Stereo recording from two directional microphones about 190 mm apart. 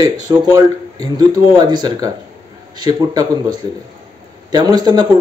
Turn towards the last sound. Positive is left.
turn(degrees=-20)  # may be behind; listen again after turning